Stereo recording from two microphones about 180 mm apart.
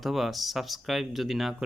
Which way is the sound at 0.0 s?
Centre (ahead or behind).